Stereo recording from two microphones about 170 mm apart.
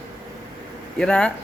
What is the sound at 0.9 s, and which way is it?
Speech, 5° left (ahead or behind).